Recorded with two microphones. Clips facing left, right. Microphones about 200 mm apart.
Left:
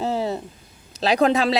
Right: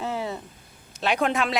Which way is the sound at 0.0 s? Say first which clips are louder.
Left 6 dB; 35° left (ahead or behind).